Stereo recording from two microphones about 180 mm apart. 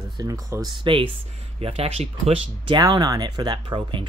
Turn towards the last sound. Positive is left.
turn(degrees=-25)  # may be behind; listen again after turning